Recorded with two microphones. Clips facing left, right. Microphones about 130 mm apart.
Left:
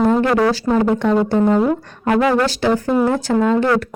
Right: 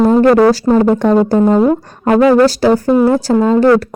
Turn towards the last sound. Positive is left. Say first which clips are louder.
# right 6 dB
turn(degrees=-35)  # may be behind; listen again after turning